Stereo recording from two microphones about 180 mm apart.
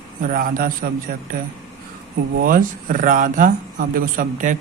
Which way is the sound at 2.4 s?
50° right (ahead or behind).